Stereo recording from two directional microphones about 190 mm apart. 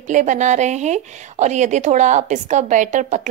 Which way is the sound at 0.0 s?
40° right (ahead or behind).